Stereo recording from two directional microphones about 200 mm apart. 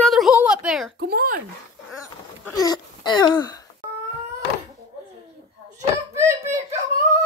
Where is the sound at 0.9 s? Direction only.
50° right (ahead or behind).